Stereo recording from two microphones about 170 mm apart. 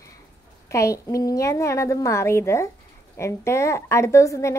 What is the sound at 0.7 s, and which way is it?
A woman's voice, 15° left (ahead or behind).